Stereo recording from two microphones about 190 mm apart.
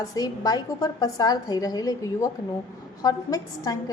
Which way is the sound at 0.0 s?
20° left (ahead or behind).